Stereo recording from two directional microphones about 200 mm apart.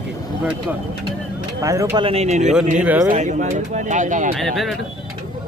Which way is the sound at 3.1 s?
35° right (ahead or behind).